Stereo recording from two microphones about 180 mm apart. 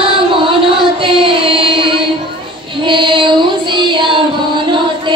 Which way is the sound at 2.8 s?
25° right (ahead or behind).